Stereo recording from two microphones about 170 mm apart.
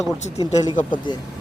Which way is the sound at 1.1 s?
25° left (ahead or behind).